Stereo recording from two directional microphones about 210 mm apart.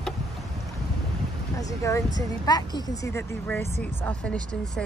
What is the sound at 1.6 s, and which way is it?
Speech, 15° left (ahead or behind).